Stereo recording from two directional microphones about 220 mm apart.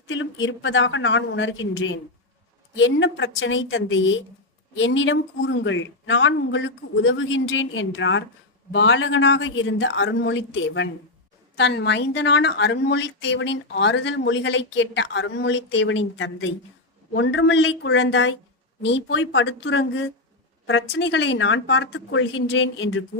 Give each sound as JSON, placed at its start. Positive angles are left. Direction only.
{"t": 0.1, "sound": "a woman's voice", "side_deg": 60}